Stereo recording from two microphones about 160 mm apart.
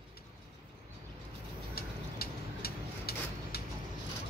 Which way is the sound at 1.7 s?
70° left (ahead or behind).